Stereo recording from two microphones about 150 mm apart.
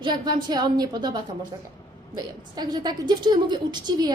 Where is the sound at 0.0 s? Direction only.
30° right (ahead or behind).